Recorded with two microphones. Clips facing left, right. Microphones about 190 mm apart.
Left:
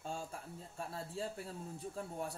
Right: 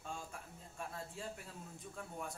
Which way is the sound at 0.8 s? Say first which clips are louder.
Left 4 dB; 35° left (ahead or behind).